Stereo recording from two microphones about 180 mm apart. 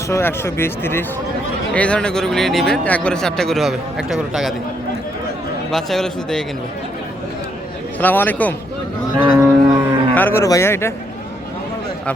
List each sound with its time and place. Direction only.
0.1 s speech: 15° left (ahead or behind); by 4.5 s centre (ahead or behind)
5.7 s speech: centre (ahead or behind)
7.9 s speech: 10° left (ahead or behind)
9.3 s music: 10° right (ahead or behind)
10.2 s speech: 10° left (ahead or behind)